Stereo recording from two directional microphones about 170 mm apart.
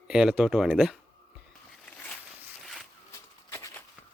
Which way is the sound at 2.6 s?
Centre (ahead or behind).